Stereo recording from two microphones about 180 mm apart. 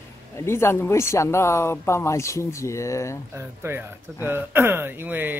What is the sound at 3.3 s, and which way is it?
Speech, 15° right (ahead or behind).